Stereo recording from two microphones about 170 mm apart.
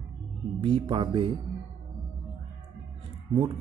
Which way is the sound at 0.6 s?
30° right (ahead or behind).